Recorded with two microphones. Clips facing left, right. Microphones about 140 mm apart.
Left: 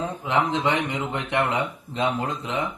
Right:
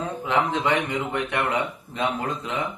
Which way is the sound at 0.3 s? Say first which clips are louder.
Even; 20° left (ahead or behind).